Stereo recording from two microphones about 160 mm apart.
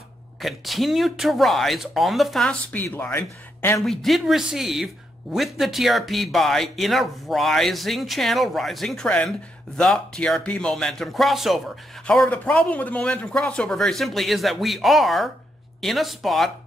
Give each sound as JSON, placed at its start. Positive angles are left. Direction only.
{"t": 0.4, "sound": "a man's voice", "side_deg": 0}
{"t": 3.8, "sound": "a man's voice", "side_deg": 0}